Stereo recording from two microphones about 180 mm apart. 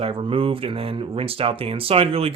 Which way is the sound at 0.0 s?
30° right (ahead or behind).